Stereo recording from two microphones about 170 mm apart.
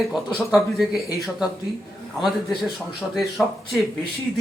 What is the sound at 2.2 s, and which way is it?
Speech, centre (ahead or behind).